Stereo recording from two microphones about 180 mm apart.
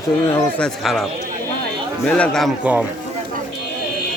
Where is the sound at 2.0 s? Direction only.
5° left (ahead or behind).